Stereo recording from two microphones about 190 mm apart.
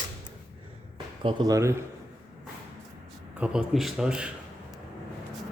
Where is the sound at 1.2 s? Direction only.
15° right (ahead or behind).